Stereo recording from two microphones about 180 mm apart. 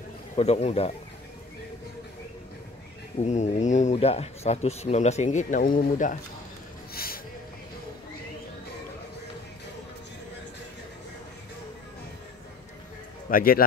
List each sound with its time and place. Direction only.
0.4 s speech: 35° left (ahead or behind)
3.3 s speech: 40° left (ahead or behind)
6.9 s a sound: 55° left (ahead or behind)
13.3 s speech: 55° left (ahead or behind)